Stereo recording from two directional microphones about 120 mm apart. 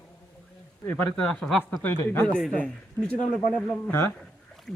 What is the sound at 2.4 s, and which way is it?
Speech, 5° left (ahead or behind).